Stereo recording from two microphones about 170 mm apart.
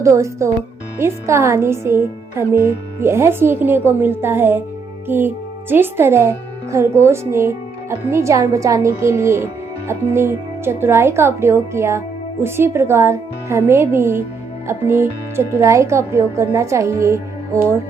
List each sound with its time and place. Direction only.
0.0 s speech: 15° right (ahead or behind)